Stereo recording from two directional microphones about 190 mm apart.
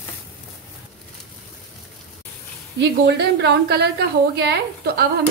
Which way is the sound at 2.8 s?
60° right (ahead or behind).